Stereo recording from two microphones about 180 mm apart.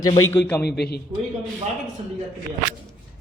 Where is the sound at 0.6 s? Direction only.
65° left (ahead or behind).